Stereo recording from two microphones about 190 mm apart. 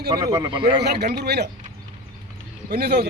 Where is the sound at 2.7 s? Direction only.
55° right (ahead or behind).